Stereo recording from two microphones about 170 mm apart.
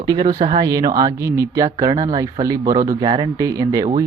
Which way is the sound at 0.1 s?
25° right (ahead or behind).